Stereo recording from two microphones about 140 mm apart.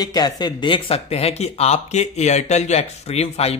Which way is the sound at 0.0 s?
30° left (ahead or behind).